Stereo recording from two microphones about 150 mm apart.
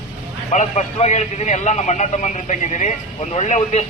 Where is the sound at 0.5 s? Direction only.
50° left (ahead or behind).